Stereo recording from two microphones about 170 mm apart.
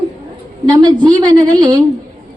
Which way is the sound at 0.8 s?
25° right (ahead or behind).